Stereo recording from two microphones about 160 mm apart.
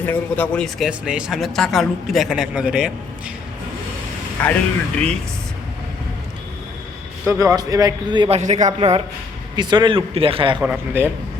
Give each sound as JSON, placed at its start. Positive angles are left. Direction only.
{"t": 0.0, "sound": "speech", "side_deg": 10}
{"t": 0.9, "sound": "speech", "side_deg": -5}
{"t": 4.4, "sound": "speech", "side_deg": 10}
{"t": 7.3, "sound": "a man's voice", "side_deg": -20}
{"t": 8.3, "sound": "a man's voice", "side_deg": -50}
{"t": 8.8, "sound": "a man's voice", "side_deg": -35}
{"t": 10.6, "sound": "a man's voice", "side_deg": -10}